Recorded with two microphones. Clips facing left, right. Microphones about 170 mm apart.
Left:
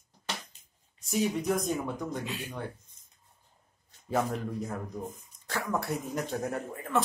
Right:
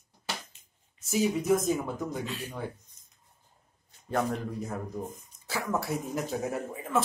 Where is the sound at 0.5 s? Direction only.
35° left (ahead or behind).